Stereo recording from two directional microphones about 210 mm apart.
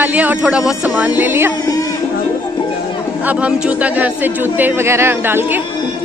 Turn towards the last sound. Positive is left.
turn(degrees=-10)  # may be behind; listen again after turning